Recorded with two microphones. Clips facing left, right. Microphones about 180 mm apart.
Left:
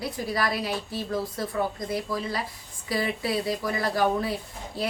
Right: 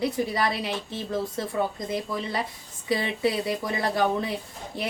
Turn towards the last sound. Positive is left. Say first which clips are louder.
# left 1 dB
turn(degrees=-20)  # may be behind; listen again after turning